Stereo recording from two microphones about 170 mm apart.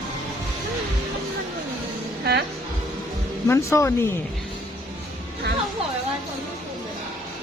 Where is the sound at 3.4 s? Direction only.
15° left (ahead or behind).